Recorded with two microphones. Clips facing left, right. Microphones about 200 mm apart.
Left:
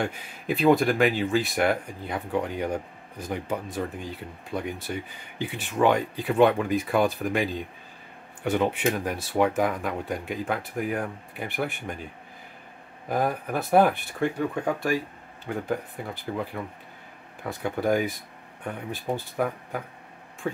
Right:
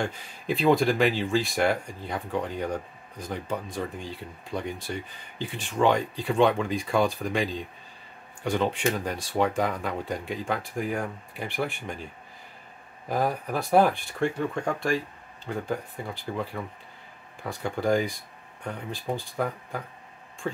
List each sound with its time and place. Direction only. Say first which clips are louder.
0.0 s speech: left 1 dB; centre (ahead or behind)
13.1 s speech: left 1 dB; centre (ahead or behind)
19.1 s speech: left 2 dB; 5° left (ahead or behind)